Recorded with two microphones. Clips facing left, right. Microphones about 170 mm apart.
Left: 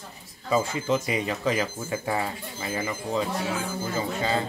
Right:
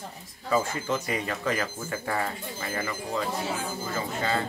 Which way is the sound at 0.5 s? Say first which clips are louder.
Left 2 dB; 15° left (ahead or behind).